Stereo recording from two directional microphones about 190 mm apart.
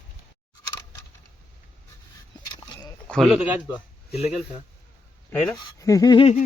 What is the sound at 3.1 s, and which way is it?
Speech, centre (ahead or behind).